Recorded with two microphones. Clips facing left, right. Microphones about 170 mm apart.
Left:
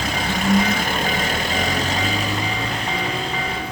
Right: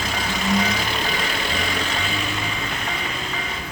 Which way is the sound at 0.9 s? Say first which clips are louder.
Left 3 dB; 45° left (ahead or behind).